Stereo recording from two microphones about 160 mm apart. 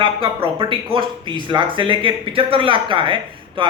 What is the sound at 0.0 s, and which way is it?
Speech, 35° right (ahead or behind).